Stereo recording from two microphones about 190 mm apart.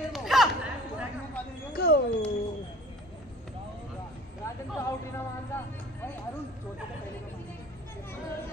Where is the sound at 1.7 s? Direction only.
55° left (ahead or behind).